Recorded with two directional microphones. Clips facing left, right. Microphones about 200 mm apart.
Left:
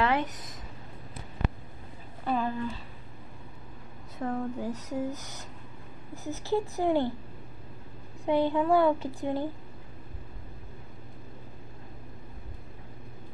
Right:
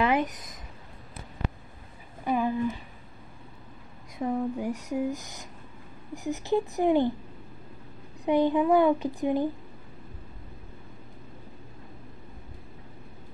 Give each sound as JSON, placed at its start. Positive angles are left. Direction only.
{"t": 0.0, "sound": "speech", "side_deg": -15}
{"t": 2.2, "sound": "a sound", "side_deg": -15}
{"t": 4.2, "sound": "speech", "side_deg": -15}
{"t": 8.3, "sound": "speech", "side_deg": -15}